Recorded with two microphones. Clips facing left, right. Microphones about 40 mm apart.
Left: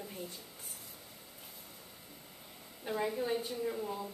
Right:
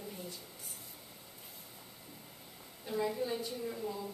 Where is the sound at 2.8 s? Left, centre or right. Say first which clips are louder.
Even; left.